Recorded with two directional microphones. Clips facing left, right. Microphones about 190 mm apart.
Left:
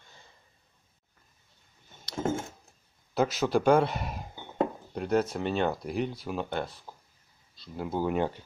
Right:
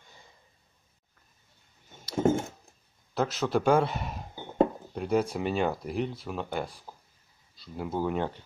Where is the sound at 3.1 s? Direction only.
5° left (ahead or behind).